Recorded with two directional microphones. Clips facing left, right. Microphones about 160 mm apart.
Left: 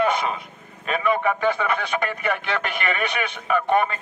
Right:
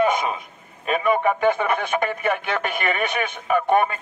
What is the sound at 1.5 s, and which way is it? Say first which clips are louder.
Music: right 2 dB; 50° right (ahead or behind).